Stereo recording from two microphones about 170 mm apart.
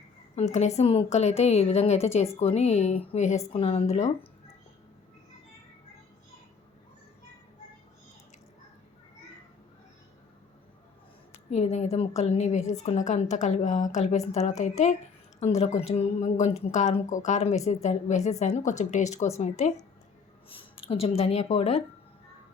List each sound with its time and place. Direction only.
0.3 s a woman's voice: 40° left (ahead or behind)
11.5 s a woman's voice: 40° left (ahead or behind)